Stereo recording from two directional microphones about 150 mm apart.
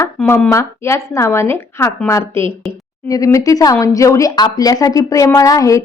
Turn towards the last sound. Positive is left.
turn(degrees=20)  # may be behind; listen again after turning